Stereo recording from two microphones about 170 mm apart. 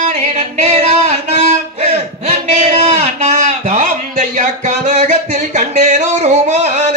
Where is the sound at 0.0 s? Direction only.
45° right (ahead or behind).